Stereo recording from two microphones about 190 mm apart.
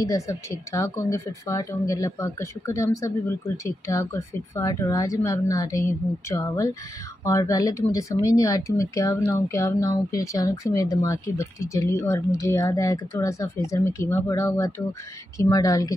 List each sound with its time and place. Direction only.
0.0 s speech: 15° left (ahead or behind)